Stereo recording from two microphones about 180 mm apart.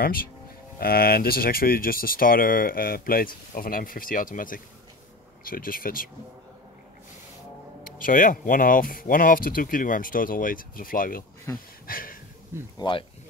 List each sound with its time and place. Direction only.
0.7 s speech: 55° left (ahead or behind)
7.8 s speech: 50° left (ahead or behind)
12.7 s speech: 25° left (ahead or behind)